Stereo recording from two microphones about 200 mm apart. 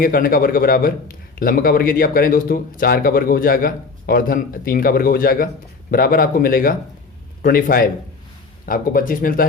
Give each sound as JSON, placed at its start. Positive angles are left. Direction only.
{"t": 0.0, "sound": "a man's voice", "side_deg": 45}